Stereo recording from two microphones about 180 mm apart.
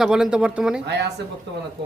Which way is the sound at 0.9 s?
70° right (ahead or behind).